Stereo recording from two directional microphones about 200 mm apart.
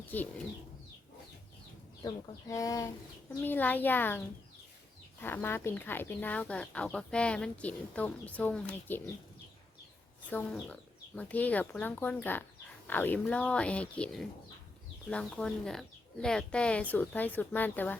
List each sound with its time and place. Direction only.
2.0 s speech: 20° left (ahead or behind)
5.2 s speech: 10° left (ahead or behind)
10.2 s speech: 5° left (ahead or behind)